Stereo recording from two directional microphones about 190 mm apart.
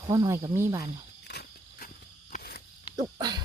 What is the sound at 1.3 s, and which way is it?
Walk, 55° left (ahead or behind).